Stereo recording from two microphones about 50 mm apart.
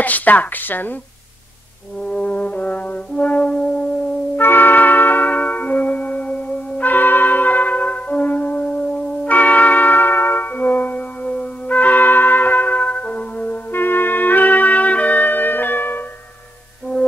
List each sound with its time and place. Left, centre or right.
0.0 s a woman's voice: left
2.0 s brass instrument: left
3.5 s music: left
4.4 s music: left
13.7 s music: left